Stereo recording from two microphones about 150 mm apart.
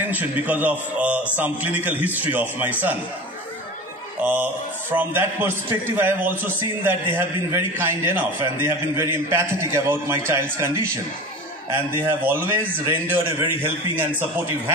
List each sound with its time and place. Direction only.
0.1 s a man's voice: 10° right (ahead or behind)
4.2 s a man's voice: 10° right (ahead or behind)
12.0 s a man's voice: 15° right (ahead or behind)